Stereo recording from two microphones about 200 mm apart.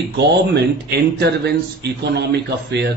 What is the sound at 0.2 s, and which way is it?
Speech, 55° right (ahead or behind).